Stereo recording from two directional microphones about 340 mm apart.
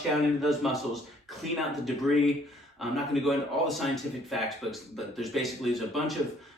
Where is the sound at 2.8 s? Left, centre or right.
Centre.